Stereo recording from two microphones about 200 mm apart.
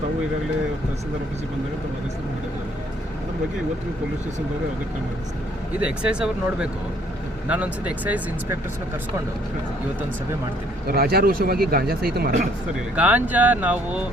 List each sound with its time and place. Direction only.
5.8 s speech: 5° right (ahead or behind)
10.8 s speech: 50° right (ahead or behind)
13.0 s speech: 5° right (ahead or behind)